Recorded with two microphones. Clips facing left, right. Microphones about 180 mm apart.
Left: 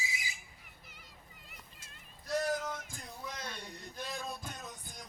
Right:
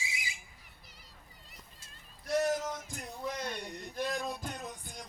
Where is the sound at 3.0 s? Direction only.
65° right (ahead or behind).